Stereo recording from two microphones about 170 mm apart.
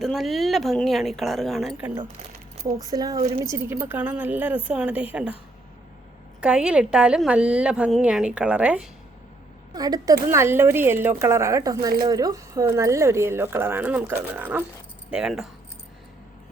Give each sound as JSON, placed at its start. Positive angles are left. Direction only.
{"t": 0.0, "sound": "a woman's voice", "side_deg": 0}
{"t": 2.7, "sound": "speech", "side_deg": -20}
{"t": 6.4, "sound": "speech", "side_deg": -5}
{"t": 9.7, "sound": "a woman's voice", "side_deg": -20}